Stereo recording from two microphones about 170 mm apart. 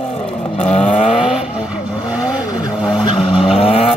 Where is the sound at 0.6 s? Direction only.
40° left (ahead or behind).